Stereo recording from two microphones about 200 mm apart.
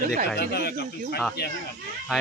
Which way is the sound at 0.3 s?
55° left (ahead or behind).